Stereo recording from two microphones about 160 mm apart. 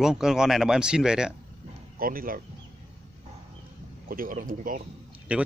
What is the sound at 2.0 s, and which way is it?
Speech, 65° right (ahead or behind).